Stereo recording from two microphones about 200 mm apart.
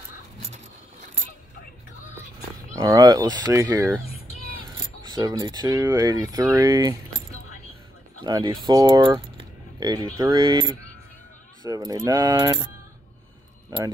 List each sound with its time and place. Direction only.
2.8 s speech: 20° right (ahead or behind)
5.0 s speech: 20° right (ahead or behind)
8.2 s speech: 20° right (ahead or behind)